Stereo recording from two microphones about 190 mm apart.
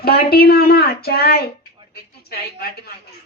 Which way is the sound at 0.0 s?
55° left (ahead or behind).